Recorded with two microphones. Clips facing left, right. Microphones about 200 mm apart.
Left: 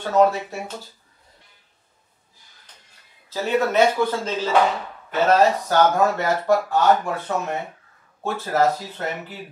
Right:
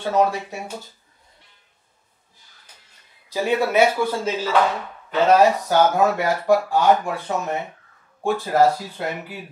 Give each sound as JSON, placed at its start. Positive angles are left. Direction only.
{"t": 0.0, "sound": "speech", "side_deg": -10}
{"t": 3.3, "sound": "speech", "side_deg": -15}